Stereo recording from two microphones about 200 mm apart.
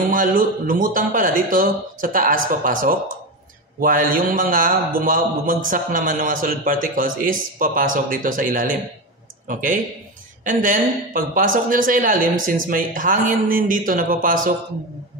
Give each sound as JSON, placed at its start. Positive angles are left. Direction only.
{"t": 0.1, "sound": "a man's voice", "side_deg": -40}